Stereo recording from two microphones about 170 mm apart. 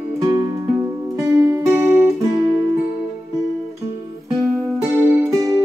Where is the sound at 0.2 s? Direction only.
20° right (ahead or behind).